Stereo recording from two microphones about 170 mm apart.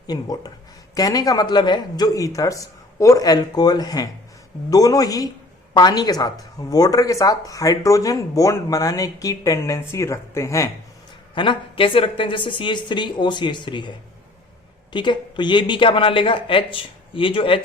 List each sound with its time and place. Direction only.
0.1 s speech: 20° left (ahead or behind)
11.3 s speech: 30° left (ahead or behind)
14.9 s speech: 30° left (ahead or behind)